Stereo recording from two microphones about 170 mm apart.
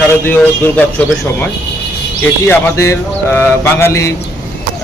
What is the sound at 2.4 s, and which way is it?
Speech, 15° left (ahead or behind).